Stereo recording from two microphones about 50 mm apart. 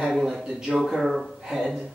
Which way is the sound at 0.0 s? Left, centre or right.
Centre.